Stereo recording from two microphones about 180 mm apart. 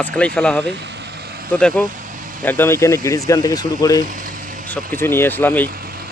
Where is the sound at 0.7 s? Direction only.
70° right (ahead or behind).